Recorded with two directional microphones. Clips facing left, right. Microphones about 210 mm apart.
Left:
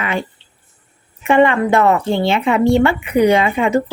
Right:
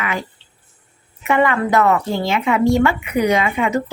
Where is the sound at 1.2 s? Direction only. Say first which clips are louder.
Left 4 dB; 30° left (ahead or behind).